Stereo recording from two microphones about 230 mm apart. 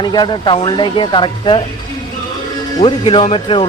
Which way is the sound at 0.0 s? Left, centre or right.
Centre.